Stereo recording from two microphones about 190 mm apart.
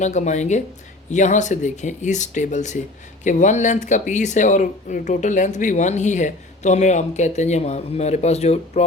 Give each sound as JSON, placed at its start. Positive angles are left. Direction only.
{"t": 0.0, "sound": "speech", "side_deg": 40}